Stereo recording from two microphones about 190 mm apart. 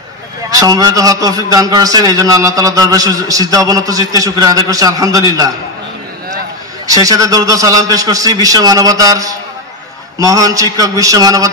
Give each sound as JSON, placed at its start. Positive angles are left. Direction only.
{"t": 0.5, "sound": "a man's voice", "side_deg": -20}
{"t": 6.9, "sound": "a man's voice", "side_deg": -20}